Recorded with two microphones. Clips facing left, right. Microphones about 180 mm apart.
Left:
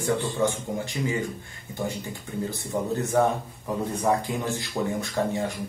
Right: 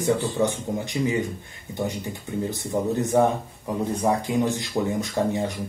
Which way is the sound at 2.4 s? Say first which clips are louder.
Right 3 dB; 20° right (ahead or behind).